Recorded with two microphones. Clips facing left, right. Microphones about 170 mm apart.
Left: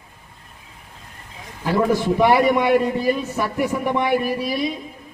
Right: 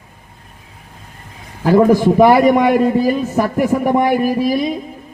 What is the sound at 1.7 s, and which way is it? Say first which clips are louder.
A man's voice: right 8 dB; 45° right (ahead or behind).